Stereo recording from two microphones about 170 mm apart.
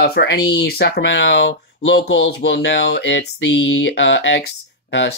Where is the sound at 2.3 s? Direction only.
75° left (ahead or behind).